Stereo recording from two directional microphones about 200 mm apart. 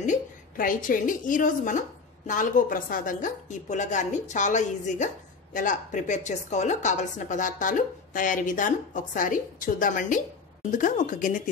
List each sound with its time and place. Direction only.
0.0 s a woman's voice: 40° left (ahead or behind)